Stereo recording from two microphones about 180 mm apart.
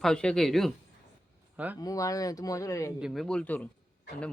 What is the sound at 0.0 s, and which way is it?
Speech, 5° left (ahead or behind).